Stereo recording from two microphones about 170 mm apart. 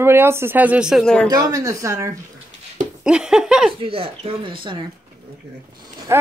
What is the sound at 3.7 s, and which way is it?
Speech, 35° right (ahead or behind).